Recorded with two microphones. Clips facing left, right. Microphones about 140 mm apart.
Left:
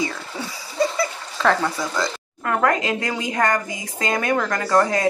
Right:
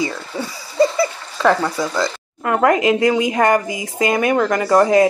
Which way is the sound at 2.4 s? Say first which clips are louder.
Right 5 dB; 20° right (ahead or behind).